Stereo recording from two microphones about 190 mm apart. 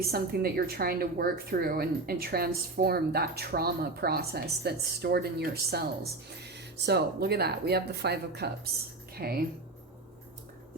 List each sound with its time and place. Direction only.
0.1 s a woman's voice: 55° right (ahead or behind)